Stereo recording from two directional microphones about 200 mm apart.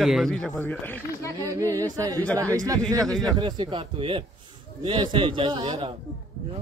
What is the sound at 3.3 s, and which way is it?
A man's voice, 20° right (ahead or behind).